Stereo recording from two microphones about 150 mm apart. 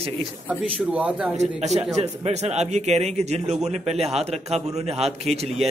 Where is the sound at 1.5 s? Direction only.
50° right (ahead or behind).